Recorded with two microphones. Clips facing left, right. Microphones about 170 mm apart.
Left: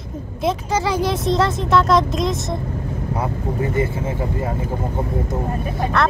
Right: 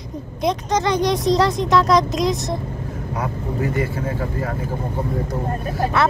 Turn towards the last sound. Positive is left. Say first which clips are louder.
# even
turn(degrees=-5)  # may be behind; listen again after turning